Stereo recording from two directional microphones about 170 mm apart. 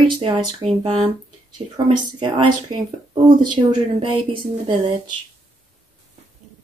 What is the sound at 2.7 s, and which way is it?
Speech, 30° right (ahead or behind).